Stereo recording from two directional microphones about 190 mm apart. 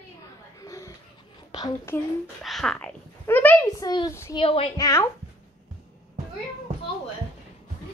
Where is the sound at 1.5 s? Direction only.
20° left (ahead or behind).